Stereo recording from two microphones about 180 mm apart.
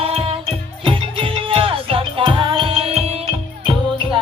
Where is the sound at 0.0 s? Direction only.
30° right (ahead or behind).